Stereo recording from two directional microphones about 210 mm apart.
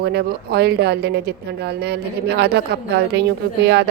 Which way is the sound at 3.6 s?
55° right (ahead or behind).